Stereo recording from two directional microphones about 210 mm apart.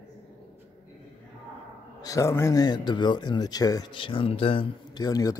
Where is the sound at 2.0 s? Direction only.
15° left (ahead or behind).